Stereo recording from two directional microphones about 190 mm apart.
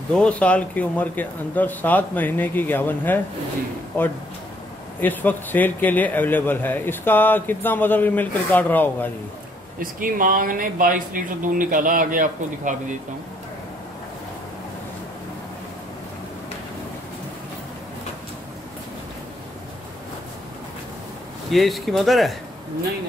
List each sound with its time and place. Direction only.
0.1 s a man's voice: 5° left (ahead or behind)
9.8 s speech: 45° right (ahead or behind)
21.5 s speech: centre (ahead or behind)